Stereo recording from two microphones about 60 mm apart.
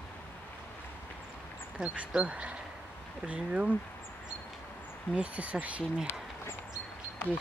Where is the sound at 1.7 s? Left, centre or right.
Right.